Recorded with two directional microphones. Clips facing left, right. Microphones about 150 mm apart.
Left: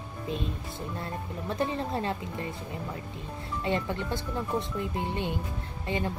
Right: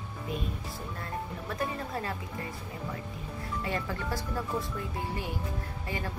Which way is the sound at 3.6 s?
25° left (ahead or behind).